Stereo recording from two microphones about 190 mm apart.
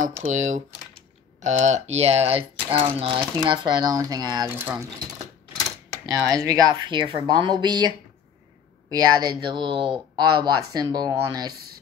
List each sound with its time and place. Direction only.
0.0 s speech: 40° right (ahead or behind); by 5.0 s 15° right (ahead or behind)
6.0 s speech: 20° right (ahead or behind)
8.9 s speech: 20° right (ahead or behind)